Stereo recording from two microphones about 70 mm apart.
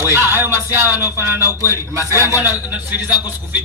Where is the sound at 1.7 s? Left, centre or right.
Right.